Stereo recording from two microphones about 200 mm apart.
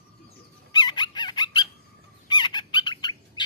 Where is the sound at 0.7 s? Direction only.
20° left (ahead or behind).